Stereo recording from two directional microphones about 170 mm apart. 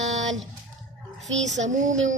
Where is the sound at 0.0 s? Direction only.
45° right (ahead or behind).